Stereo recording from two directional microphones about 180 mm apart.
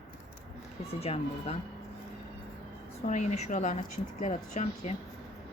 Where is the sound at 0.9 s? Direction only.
35° left (ahead or behind).